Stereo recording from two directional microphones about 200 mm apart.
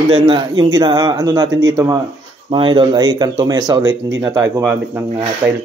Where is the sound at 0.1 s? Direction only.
25° right (ahead or behind).